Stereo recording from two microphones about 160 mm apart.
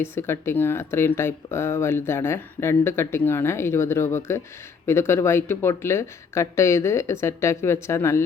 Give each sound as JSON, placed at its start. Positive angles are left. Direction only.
{"t": 0.0, "sound": "speech", "side_deg": 15}